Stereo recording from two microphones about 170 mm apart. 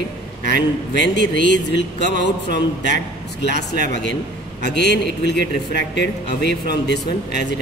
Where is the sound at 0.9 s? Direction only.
90° left.